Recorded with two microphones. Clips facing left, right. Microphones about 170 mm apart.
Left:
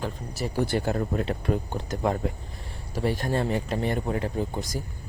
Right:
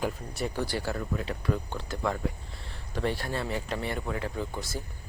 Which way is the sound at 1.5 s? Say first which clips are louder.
Left 4 dB; 20° left (ahead or behind).